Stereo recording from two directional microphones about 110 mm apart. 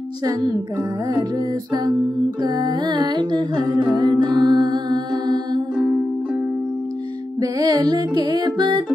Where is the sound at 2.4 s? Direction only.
40° right (ahead or behind).